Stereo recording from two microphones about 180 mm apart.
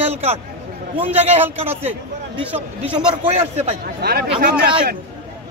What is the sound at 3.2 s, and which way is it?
Speech, 35° right (ahead or behind).